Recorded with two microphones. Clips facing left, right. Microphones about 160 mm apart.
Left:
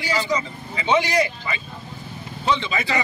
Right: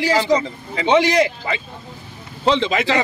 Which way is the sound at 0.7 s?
75° right (ahead or behind).